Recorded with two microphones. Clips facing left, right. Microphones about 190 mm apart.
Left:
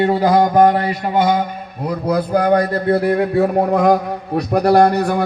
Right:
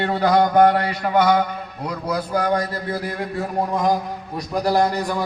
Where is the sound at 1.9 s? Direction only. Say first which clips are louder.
Left 7 dB; 55° left (ahead or behind).